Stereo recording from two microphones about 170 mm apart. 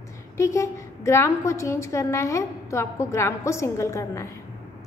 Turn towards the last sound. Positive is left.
turn(degrees=15)  # may be behind; listen again after turning